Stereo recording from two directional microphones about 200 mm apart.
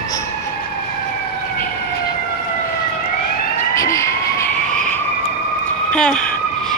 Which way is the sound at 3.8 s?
15° left (ahead or behind).